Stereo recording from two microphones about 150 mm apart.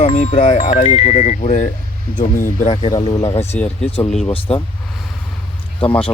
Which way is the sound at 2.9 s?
35° left (ahead or behind).